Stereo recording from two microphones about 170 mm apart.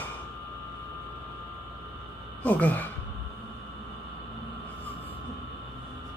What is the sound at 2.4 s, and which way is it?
Speech, 10° left (ahead or behind).